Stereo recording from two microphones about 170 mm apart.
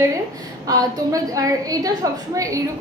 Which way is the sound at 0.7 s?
20° right (ahead or behind).